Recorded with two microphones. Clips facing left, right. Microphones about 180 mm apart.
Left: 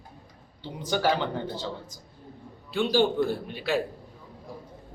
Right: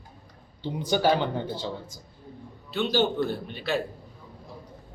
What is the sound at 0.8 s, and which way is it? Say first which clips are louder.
Speech: right 2 dB; 15° right (ahead or behind).